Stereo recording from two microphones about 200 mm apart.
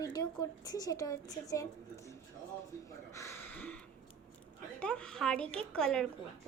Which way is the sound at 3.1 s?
15° left (ahead or behind).